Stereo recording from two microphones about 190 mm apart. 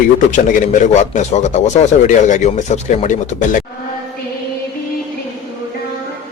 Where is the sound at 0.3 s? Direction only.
40° left (ahead or behind).